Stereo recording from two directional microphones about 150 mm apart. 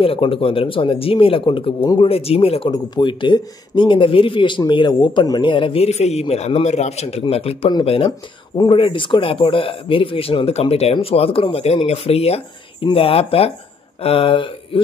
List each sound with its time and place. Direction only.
0.0 s speech: 40° left (ahead or behind)